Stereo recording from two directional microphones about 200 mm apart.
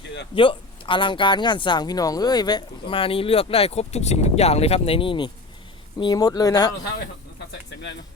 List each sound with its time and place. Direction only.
0.3 s speech: 25° left (ahead or behind)